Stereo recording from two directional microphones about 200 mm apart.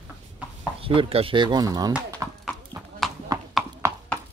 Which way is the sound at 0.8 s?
30° right (ahead or behind).